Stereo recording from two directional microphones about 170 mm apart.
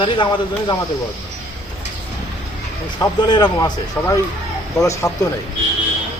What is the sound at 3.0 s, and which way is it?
Speech, 25° left (ahead or behind).